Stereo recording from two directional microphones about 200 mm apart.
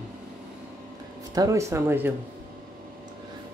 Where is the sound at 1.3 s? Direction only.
15° right (ahead or behind).